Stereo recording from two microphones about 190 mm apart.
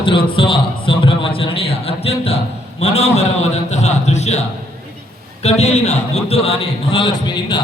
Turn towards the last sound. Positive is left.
turn(degrees=25)  # may be behind; listen again after turning